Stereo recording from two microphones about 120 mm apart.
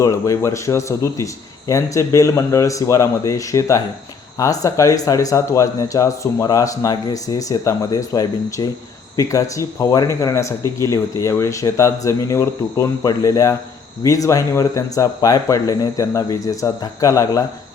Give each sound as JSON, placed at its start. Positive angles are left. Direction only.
{"t": 0.0, "sound": "speech", "side_deg": 25}